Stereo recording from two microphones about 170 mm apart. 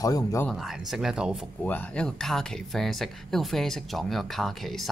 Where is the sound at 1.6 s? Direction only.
10° left (ahead or behind).